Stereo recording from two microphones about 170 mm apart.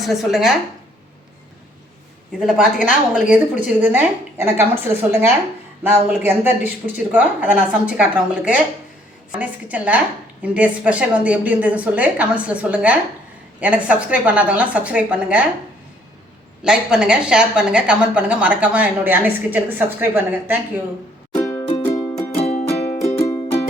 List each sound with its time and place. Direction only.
0.0 s speech: centre (ahead or behind)
2.4 s speech: 5° right (ahead or behind)
5.9 s speech: 10° right (ahead or behind)
16.6 s speech: 5° right (ahead or behind)
21.6 s music: 30° left (ahead or behind)
21.8 s music: 15° left (ahead or behind)
22.4 s music: 35° left (ahead or behind)